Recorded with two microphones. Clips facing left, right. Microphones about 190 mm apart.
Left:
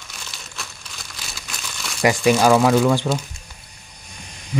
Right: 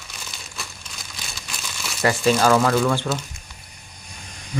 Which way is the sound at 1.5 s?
Centre (ahead or behind).